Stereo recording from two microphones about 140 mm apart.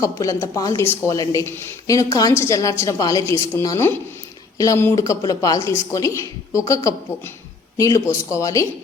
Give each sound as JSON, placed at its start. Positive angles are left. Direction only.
{"t": 0.0, "sound": "a woman's voice", "side_deg": 20}